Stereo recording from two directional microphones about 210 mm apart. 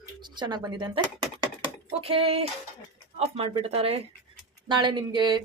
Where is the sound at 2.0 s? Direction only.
25° right (ahead or behind).